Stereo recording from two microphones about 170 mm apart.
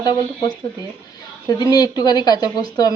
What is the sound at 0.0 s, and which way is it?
A woman's voice, 25° left (ahead or behind).